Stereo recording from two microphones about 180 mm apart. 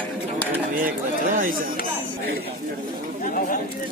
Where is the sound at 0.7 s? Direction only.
50° right (ahead or behind).